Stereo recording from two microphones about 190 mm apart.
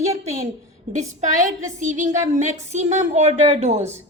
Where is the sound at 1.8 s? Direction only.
40° right (ahead or behind).